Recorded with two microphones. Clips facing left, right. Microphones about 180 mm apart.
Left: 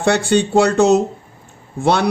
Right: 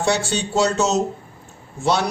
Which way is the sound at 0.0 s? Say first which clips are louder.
Left 6 dB; 60° left (ahead or behind).